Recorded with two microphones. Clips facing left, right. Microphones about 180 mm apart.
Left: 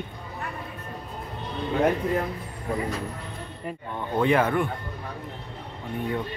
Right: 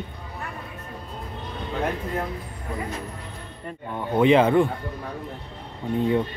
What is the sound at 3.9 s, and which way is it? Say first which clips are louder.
Speech: right 5 dB; 15° right (ahead or behind).